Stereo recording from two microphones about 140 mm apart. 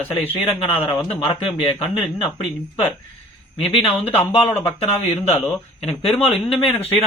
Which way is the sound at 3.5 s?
40° left (ahead or behind).